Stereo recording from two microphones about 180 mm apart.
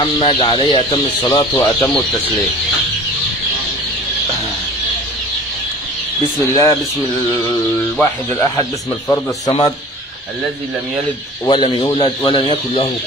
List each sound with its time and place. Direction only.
0.0 s speech: 30° left (ahead or behind)
1.5 s speech: 15° left (ahead or behind)
6.5 s speech: 20° left (ahead or behind)
8.0 s speech: 15° left (ahead or behind)
11.4 s speech: 25° left (ahead or behind)